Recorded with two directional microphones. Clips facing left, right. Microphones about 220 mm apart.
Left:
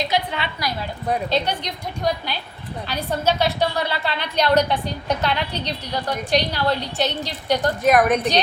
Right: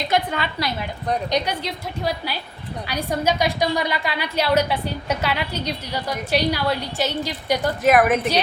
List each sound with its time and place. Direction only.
0.1 s a woman's voice: 45° right (ahead or behind)
1.3 s a woman's voice: 5° right (ahead or behind)